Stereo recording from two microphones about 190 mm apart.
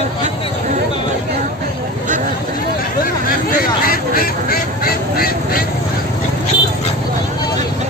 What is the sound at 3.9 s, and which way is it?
Quack, 50° left (ahead or behind).